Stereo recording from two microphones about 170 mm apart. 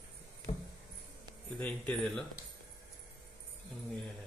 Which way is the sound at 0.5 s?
40° left (ahead or behind).